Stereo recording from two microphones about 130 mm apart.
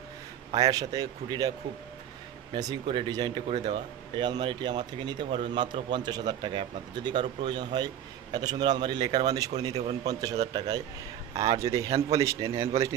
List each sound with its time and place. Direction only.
0.6 s speech: 25° right (ahead or behind)
2.5 s speech: 35° right (ahead or behind)